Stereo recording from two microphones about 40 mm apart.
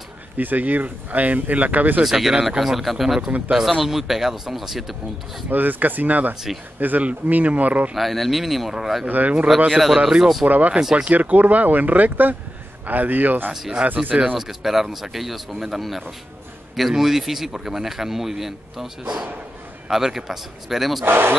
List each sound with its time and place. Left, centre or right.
0.4 s speech: right
2.0 s speech: centre
3.3 s speech: right
3.7 s speech: centre
5.5 s speech: right
7.9 s speech: centre
10.4 s speech: right
10.8 s speech: centre
11.1 s speech: right
13.5 s speech: centre
14.0 s speech: right
14.3 s speech: centre
19.9 s speech: centre
21.0 s speech: right